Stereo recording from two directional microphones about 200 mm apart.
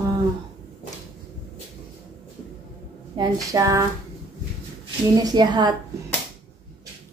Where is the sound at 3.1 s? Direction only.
15° right (ahead or behind).